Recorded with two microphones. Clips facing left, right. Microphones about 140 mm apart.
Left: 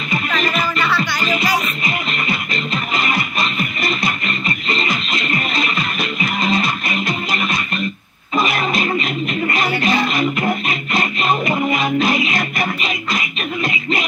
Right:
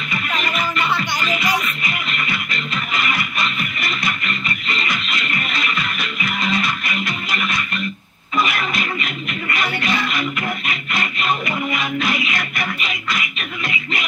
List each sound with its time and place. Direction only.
0.1 s music: 35° left (ahead or behind)